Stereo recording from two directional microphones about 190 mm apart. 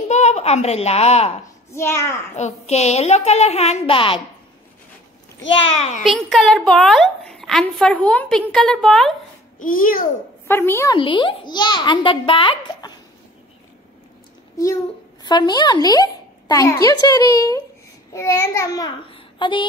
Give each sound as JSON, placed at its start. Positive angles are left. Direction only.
{"t": 0.1, "sound": "a child's voice", "side_deg": 35}
{"t": 1.7, "sound": "a woman's voice", "side_deg": 15}
{"t": 2.3, "sound": "a child's voice", "side_deg": 35}
{"t": 5.8, "sound": "a child's voice", "side_deg": 35}
{"t": 6.0, "sound": "a woman's voice", "side_deg": 0}
{"t": 9.6, "sound": "a child's voice", "side_deg": 45}
{"t": 10.5, "sound": "a woman's voice", "side_deg": 10}
{"t": 11.0, "sound": "a woman's voice", "side_deg": 25}
{"t": 15.2, "sound": "a woman's voice", "side_deg": 25}